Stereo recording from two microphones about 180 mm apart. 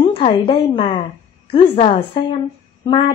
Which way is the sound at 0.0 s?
30° left (ahead or behind).